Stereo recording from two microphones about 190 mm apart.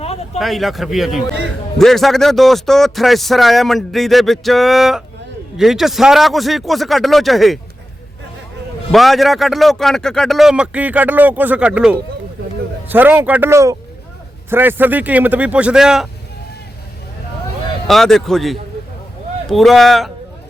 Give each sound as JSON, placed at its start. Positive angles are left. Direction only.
{"t": 0.3, "sound": "speech", "side_deg": 0}
{"t": 8.9, "sound": "a man's voice", "side_deg": 0}
{"t": 17.8, "sound": "speech", "side_deg": 0}